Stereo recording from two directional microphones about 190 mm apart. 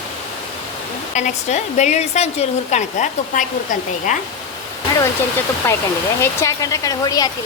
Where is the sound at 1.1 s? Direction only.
35° left (ahead or behind).